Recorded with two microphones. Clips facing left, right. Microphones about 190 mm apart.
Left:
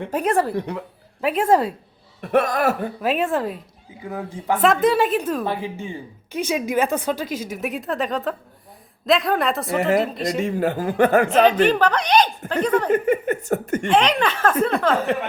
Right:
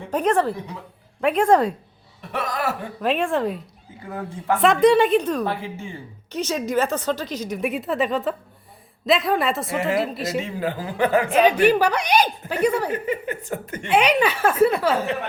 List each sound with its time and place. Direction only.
0.1 s a woman's voice: 10° left (ahead or behind)
2.2 s speech: 55° left (ahead or behind)
3.0 s a woman's voice: 5° left (ahead or behind)
4.6 s a woman's voice: centre (ahead or behind)
10.3 s speech: 50° left (ahead or behind)
11.3 s a woman's voice: 10° right (ahead or behind)
12.9 s speech: 50° left (ahead or behind)
13.9 s a woman's voice: 10° right (ahead or behind)